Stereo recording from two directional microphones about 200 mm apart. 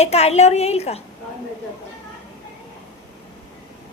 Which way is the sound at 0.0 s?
30° left (ahead or behind).